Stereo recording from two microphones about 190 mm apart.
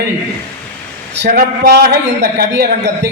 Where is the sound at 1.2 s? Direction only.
55° right (ahead or behind).